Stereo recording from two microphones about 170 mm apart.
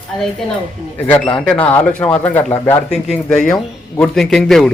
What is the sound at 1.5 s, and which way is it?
A man's voice, 10° left (ahead or behind).